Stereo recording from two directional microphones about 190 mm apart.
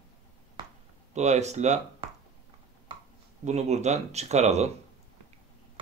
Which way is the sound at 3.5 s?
35° right (ahead or behind).